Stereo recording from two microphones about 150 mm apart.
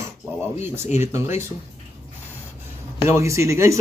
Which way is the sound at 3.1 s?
20° right (ahead or behind).